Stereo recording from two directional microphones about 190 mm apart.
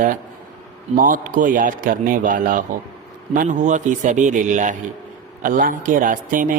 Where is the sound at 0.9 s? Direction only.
45° right (ahead or behind).